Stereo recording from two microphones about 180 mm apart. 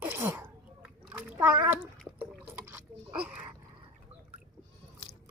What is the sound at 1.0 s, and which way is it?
Splash, 10° right (ahead or behind).